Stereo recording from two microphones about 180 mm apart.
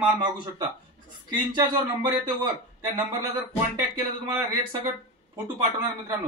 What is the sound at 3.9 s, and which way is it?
Speech, 20° right (ahead or behind).